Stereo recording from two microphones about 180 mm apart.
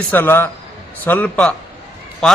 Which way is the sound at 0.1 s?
10° left (ahead or behind).